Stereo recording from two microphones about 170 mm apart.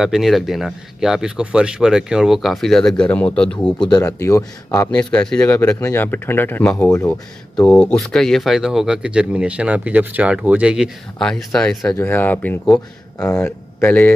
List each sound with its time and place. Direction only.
0.0 s speech: centre (ahead or behind)
3.8 s speech: 25° left (ahead or behind)
4.6 s speech: 10° left (ahead or behind)
7.5 s speech: 5° left (ahead or behind)
11.8 s speech: 15° left (ahead or behind)